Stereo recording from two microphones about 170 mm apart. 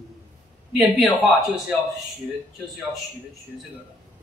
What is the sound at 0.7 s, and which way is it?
Speech, 5° right (ahead or behind).